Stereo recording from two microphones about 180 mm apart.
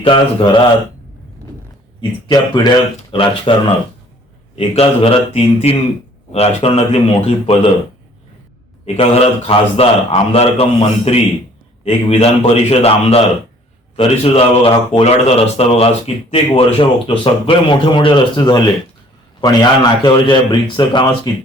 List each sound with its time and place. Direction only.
0.0 s a man's voice: 25° left (ahead or behind)
2.0 s a man's voice: 25° left (ahead or behind)
4.5 s speech: 35° left (ahead or behind)
9.0 s a man's voice: 30° left (ahead or behind)